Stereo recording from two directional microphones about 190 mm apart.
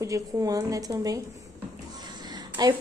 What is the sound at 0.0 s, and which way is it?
Speech, 15° right (ahead or behind).